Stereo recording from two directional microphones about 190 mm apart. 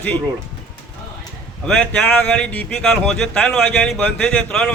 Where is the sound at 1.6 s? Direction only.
5° left (ahead or behind).